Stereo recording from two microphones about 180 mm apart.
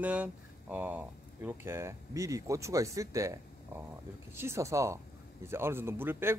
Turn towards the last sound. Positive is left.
turn(degrees=-10)  # may be behind; listen again after turning